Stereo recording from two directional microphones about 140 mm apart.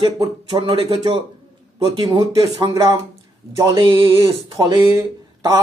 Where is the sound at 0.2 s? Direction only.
35° right (ahead or behind).